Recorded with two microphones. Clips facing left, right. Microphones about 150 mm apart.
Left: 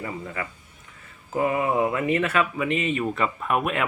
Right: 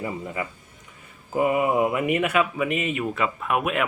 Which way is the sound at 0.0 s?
15° right (ahead or behind).